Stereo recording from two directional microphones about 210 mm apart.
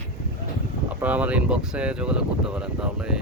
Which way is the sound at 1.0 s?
5° right (ahead or behind).